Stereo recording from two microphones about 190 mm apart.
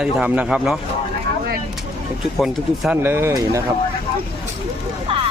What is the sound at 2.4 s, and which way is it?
Speech, centre (ahead or behind).